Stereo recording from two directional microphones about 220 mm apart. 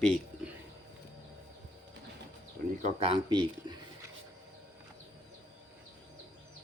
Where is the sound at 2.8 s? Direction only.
30° right (ahead or behind).